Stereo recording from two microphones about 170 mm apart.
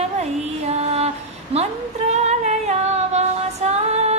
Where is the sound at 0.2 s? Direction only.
40° right (ahead or behind).